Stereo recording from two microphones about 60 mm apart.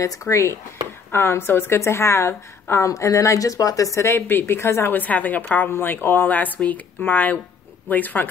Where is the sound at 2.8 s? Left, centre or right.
Left.